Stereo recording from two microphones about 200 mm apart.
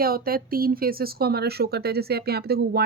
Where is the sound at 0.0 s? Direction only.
50° right (ahead or behind).